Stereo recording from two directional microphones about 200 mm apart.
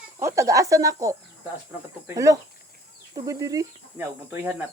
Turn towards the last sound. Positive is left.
turn(degrees=-15)  # may be behind; listen again after turning